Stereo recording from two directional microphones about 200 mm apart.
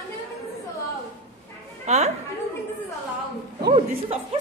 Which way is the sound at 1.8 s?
35° right (ahead or behind).